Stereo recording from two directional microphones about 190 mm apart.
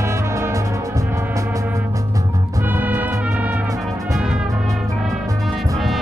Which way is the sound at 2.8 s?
10° right (ahead or behind).